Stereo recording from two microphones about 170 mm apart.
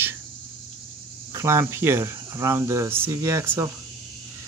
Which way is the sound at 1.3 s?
15° right (ahead or behind).